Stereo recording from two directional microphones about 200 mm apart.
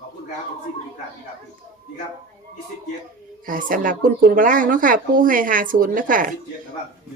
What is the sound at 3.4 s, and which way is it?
A woman's voice, 40° right (ahead or behind).